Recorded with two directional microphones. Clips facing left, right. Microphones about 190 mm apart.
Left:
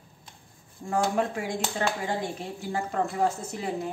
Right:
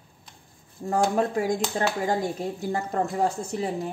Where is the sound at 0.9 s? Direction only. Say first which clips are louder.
Right 3 dB; 40° right (ahead or behind).